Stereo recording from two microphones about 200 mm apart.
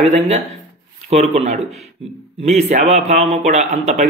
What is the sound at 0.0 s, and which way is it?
Speech, 30° right (ahead or behind).